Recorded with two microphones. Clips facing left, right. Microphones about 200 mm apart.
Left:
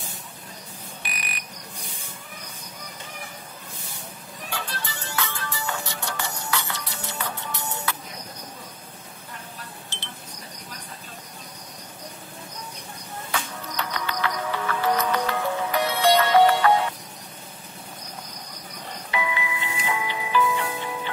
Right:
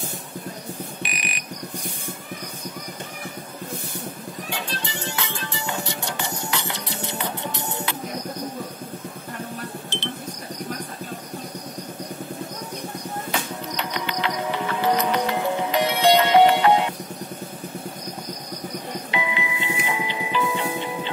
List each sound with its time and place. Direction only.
1.0 s a sound: 20° right (ahead or behind)
4.5 s music: 20° right (ahead or behind)
13.3 s music: 20° right (ahead or behind)
19.0 s tubular bells: 20° right (ahead or behind)